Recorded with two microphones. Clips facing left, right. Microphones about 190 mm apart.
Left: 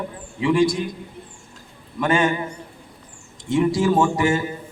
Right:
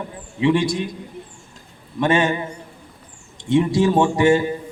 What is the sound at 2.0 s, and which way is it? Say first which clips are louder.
Speech: right 1 dB; 25° right (ahead or behind).